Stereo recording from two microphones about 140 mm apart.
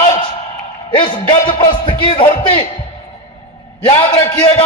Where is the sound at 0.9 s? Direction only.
35° left (ahead or behind).